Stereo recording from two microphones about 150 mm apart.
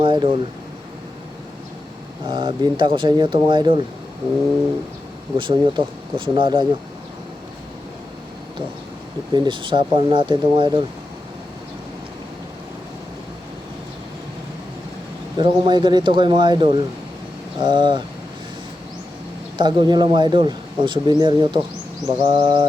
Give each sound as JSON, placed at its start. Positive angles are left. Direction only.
{"t": 0.0, "sound": "speech", "side_deg": -30}
{"t": 2.2, "sound": "speech", "side_deg": -30}
{"t": 5.4, "sound": "speech", "side_deg": -35}
{"t": 9.3, "sound": "speech", "side_deg": -30}
{"t": 15.4, "sound": "speech", "side_deg": -30}
{"t": 19.5, "sound": "speech", "side_deg": -30}